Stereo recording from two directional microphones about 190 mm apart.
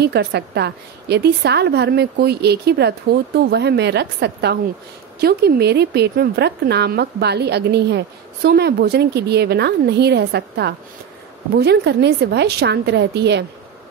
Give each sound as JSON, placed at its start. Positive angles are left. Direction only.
{"t": 0.0, "sound": "a woman's voice", "side_deg": -60}